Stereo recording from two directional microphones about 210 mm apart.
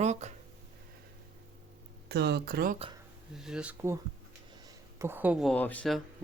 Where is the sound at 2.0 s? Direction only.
50° right (ahead or behind).